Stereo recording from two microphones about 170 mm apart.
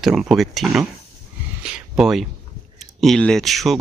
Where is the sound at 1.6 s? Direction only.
5° right (ahead or behind).